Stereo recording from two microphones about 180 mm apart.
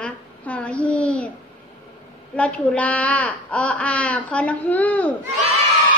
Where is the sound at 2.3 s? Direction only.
5° left (ahead or behind).